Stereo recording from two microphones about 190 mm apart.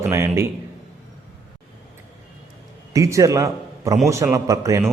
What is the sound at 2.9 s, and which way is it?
A man's voice, 15° right (ahead or behind).